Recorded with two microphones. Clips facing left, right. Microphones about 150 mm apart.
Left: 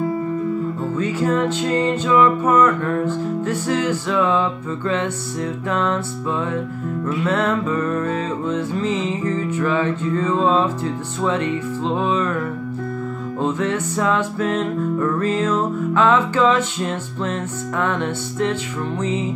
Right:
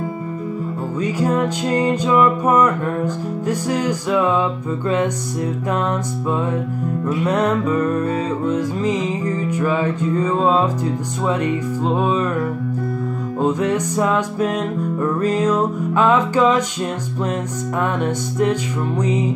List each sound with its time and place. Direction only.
0.9 s music: 15° right (ahead or behind)
13.4 s music: 15° right (ahead or behind)